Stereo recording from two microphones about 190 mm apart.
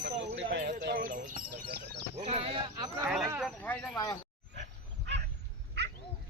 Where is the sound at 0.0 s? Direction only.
65° right (ahead or behind).